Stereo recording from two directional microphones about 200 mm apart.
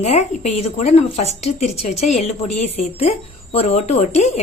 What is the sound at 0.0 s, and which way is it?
Speech, 35° left (ahead or behind).